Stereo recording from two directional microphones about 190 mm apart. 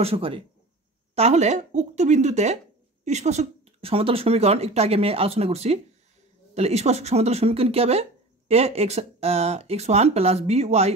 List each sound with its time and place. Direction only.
0.0 s speech: 30° right (ahead or behind)